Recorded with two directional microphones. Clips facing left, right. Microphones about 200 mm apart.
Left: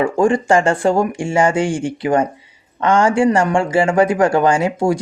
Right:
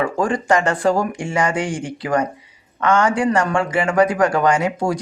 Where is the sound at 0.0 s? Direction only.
25° left (ahead or behind).